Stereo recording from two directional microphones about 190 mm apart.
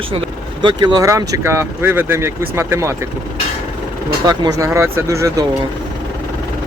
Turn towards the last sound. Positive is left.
turn(degrees=-15)  # may be behind; listen again after turning